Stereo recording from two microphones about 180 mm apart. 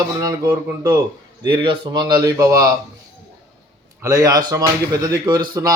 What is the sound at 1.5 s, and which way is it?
Speech, 25° right (ahead or behind).